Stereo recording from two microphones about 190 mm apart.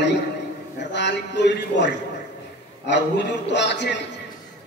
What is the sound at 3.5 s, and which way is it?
Speech, 65° left (ahead or behind).